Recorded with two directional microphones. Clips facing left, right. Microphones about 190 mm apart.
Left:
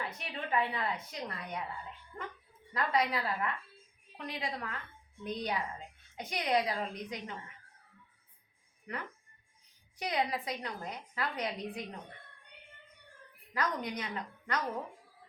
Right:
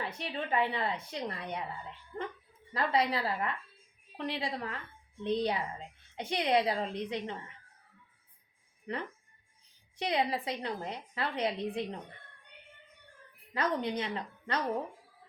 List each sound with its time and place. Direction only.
0.2 s a woman's voice: 30° right (ahead or behind)
2.7 s a woman's voice: 30° right (ahead or behind)
8.9 s a woman's voice: 30° right (ahead or behind)
13.5 s a woman's voice: 30° right (ahead or behind)